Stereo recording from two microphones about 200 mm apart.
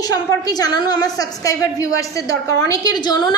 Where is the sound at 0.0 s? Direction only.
20° left (ahead or behind).